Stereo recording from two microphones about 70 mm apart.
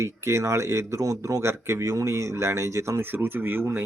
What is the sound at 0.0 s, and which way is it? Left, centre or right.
Speech, right.